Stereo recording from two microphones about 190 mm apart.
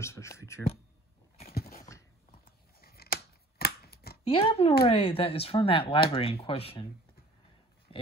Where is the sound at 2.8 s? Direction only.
55° left (ahead or behind).